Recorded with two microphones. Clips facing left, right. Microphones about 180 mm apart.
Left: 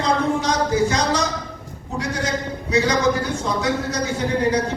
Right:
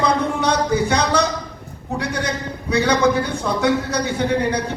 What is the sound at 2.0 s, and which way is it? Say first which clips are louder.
Speech: left 1 dB; 65° right (ahead or behind).